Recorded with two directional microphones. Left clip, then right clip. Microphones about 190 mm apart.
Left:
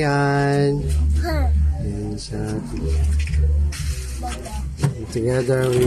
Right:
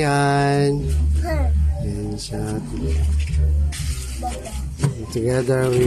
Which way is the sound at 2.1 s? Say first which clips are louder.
Right 1 dB; centre (ahead or behind).